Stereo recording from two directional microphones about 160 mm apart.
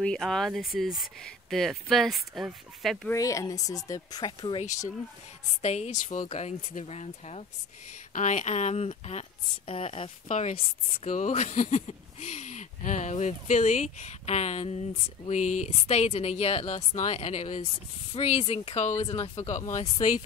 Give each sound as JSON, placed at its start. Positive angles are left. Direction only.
{"t": 0.0, "sound": "speech", "side_deg": 5}
{"t": 3.1, "sound": "speech", "side_deg": 20}
{"t": 5.6, "sound": "speech", "side_deg": 45}
{"t": 10.2, "sound": "speech", "side_deg": 50}